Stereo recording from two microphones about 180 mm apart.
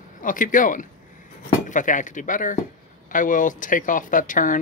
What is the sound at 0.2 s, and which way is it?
Speech, 50° left (ahead or behind).